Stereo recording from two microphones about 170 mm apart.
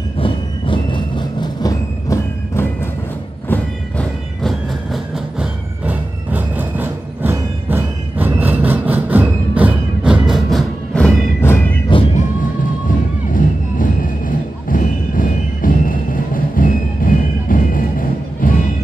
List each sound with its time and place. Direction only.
0.2 s train: 30° left (ahead or behind); by 11.6 s 10° left (ahead or behind)
12.2 s music: 50° left (ahead or behind)